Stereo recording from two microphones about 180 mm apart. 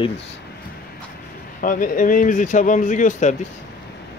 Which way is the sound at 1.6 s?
50° left (ahead or behind).